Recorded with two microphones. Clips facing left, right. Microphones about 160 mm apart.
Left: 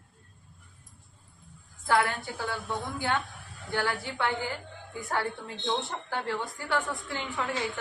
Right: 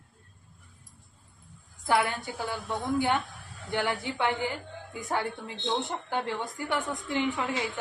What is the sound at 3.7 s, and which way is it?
A woman's voice, 20° right (ahead or behind).